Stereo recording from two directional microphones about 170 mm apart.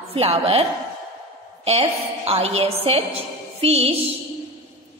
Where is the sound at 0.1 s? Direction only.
35° right (ahead or behind).